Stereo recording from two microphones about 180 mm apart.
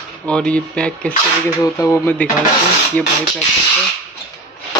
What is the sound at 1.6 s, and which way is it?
Speech, 15° left (ahead or behind).